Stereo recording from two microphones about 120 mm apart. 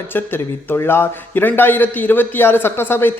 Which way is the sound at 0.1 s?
15° left (ahead or behind).